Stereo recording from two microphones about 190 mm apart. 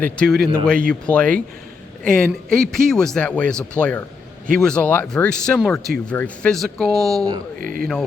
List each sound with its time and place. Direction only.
0.0 s a man's voice: 5° left (ahead or behind)
7.6 s a man's voice: 45° right (ahead or behind)